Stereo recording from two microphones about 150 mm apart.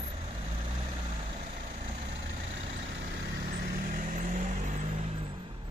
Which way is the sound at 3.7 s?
60° right (ahead or behind).